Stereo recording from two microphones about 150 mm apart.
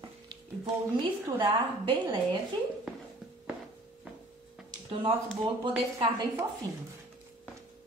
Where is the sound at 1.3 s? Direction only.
30° right (ahead or behind).